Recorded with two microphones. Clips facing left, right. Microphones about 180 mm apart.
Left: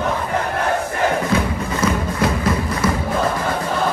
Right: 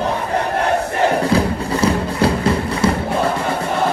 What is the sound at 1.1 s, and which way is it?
Music, 35° right (ahead or behind).